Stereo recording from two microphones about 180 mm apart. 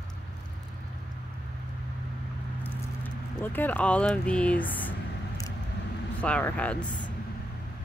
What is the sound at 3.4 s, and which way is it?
Speech, 10° left (ahead or behind).